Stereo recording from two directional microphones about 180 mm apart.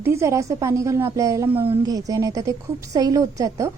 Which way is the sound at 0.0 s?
15° right (ahead or behind).